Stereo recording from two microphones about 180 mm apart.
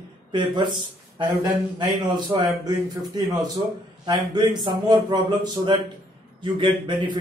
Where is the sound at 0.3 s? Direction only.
25° right (ahead or behind).